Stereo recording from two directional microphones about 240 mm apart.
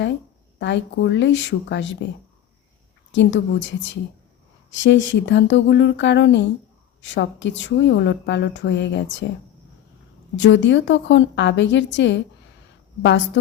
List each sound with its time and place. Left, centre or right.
0.6 s a woman's voice: left
3.1 s a woman's voice: left
10.3 s a woman's voice: left